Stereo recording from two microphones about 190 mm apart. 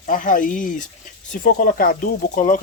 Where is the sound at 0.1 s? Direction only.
45° left (ahead or behind).